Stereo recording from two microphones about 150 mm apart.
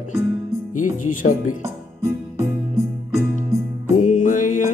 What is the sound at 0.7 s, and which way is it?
Speech, 60° left (ahead or behind).